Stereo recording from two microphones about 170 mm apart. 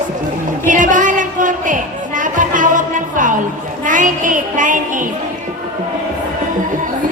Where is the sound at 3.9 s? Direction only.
50° right (ahead or behind).